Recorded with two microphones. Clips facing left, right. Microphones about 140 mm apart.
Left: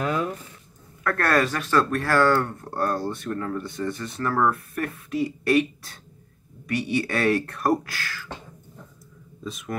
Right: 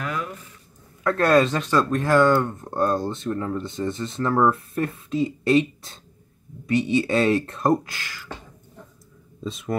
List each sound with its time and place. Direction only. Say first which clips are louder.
0.0 s a sound: left 4 dB; 30° left (ahead or behind)
1.0 s speech: right 4 dB; 20° right (ahead or behind)
9.4 s speech: right 4 dB; 25° right (ahead or behind)